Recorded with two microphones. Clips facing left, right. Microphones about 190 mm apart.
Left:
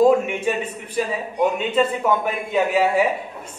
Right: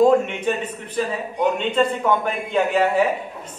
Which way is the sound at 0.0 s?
10° left (ahead or behind).